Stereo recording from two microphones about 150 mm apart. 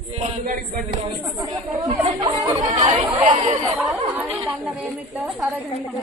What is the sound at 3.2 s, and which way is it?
Speech, 40° right (ahead or behind).